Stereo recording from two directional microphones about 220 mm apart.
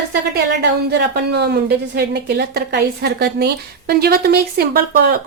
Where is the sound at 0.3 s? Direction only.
50° right (ahead or behind).